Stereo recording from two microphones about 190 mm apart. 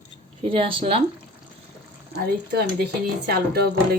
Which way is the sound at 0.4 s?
30° right (ahead or behind).